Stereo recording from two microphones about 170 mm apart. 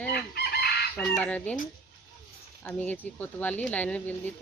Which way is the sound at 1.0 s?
5° left (ahead or behind).